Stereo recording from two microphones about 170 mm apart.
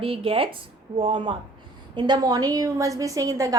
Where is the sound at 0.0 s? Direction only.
35° right (ahead or behind).